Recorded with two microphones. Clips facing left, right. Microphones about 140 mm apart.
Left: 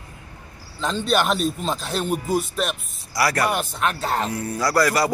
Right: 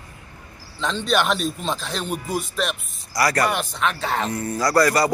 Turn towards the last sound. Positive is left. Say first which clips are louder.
# right 2 dB
turn(degrees=0)  # may be behind; listen again after turning